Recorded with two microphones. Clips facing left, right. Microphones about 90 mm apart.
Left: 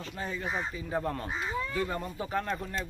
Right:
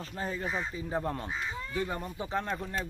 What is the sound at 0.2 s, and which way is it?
Speech, 35° right (ahead or behind).